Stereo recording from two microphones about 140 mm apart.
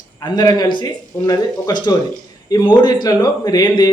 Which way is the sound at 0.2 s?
30° left (ahead or behind).